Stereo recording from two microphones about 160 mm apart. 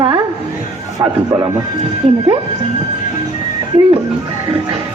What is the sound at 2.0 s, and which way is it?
Speech, 35° right (ahead or behind).